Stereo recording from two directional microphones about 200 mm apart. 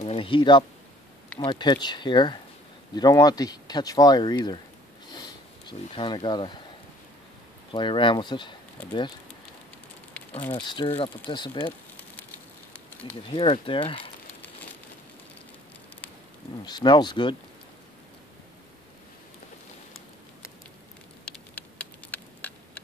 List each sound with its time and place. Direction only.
0.0 s speech: 25° left (ahead or behind)
5.1 s sniff: 20° left (ahead or behind)
7.7 s speech: 25° left (ahead or behind)
10.5 s speech: 25° left (ahead or behind)
13.3 s speech: 25° left (ahead or behind)
16.6 s speech: 20° left (ahead or behind)
21.3 s a sound: 5° left (ahead or behind)